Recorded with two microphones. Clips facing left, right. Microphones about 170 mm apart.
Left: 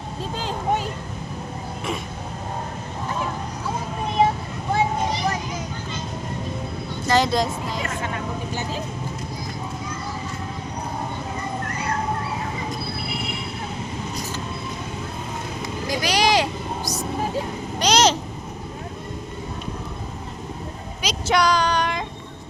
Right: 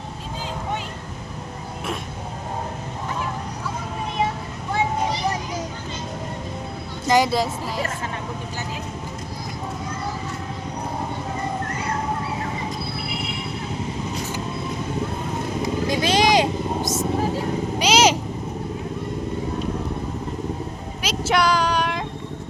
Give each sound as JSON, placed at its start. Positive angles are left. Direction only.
{"t": 7.1, "sound": "speech", "side_deg": -10}
{"t": 15.9, "sound": "vehicle", "side_deg": -25}
{"t": 17.7, "sound": "a sound", "side_deg": -10}
{"t": 21.0, "sound": "female singing", "side_deg": -5}